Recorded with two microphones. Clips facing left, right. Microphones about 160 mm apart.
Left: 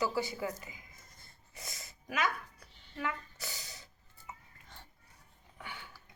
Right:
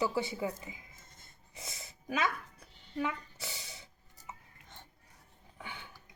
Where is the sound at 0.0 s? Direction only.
25° right (ahead or behind).